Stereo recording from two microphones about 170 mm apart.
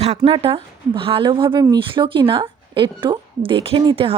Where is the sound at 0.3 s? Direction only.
30° right (ahead or behind).